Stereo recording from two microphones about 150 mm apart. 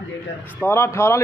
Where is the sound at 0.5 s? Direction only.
15° left (ahead or behind).